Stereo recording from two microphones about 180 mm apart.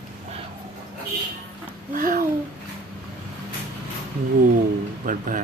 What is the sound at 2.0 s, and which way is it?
Speech, 50° right (ahead or behind).